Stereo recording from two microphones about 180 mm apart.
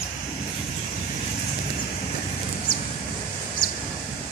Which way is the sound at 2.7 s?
25° left (ahead or behind).